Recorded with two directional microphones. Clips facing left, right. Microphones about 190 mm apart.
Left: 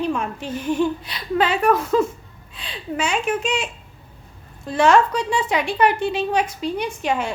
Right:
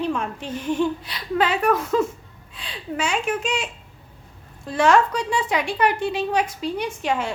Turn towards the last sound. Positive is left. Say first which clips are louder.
# left 1 dB
turn(degrees=15)  # may be behind; listen again after turning